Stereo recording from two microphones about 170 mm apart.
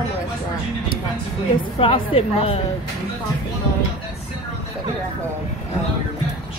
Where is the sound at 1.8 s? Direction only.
35° left (ahead or behind).